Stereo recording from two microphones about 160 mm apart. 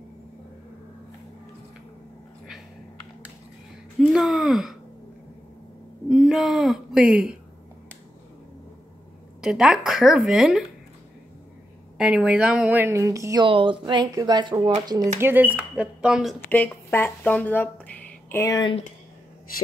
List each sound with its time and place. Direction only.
4.0 s a woman's voice: centre (ahead or behind)
6.0 s speech: 5° right (ahead or behind)
9.4 s a woman's voice: 5° right (ahead or behind)
12.0 s a woman's voice: 5° right (ahead or behind); by 13.5 s 20° right (ahead or behind)
13.5 s speech: 30° right (ahead or behind)
15.1 s a woman's voice: 15° right (ahead or behind)
16.4 s speech: 10° left (ahead or behind)
18.5 s speech: 30° left (ahead or behind)